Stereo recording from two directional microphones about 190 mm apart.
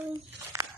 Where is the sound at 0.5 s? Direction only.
15° right (ahead or behind).